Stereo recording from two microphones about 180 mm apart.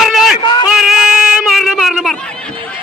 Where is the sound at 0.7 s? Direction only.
5° right (ahead or behind).